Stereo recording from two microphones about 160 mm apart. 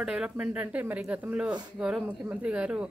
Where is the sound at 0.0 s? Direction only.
5° right (ahead or behind).